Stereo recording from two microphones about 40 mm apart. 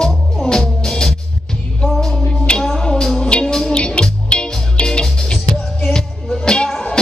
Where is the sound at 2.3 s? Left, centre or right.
Centre.